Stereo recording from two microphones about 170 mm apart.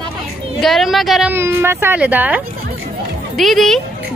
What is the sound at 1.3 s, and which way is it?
A woman's voice, 15° right (ahead or behind).